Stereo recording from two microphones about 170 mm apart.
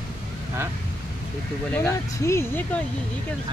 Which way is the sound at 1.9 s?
15° left (ahead or behind).